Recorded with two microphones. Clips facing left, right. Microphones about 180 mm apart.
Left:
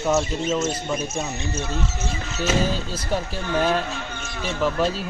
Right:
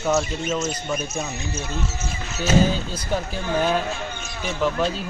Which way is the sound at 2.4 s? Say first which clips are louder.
Right 3 dB; centre (ahead or behind).